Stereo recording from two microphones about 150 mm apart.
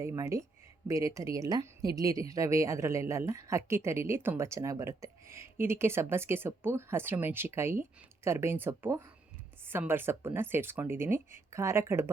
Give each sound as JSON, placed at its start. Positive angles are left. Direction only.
{"t": 0.0, "sound": "a woman's voice", "side_deg": -20}